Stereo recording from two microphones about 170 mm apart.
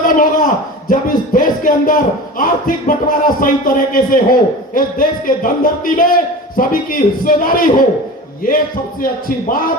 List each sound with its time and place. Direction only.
0.0 s a sound: 50° left (ahead or behind)
2.4 s music: 55° left (ahead or behind)
6.6 s a man's voice: 55° left (ahead or behind)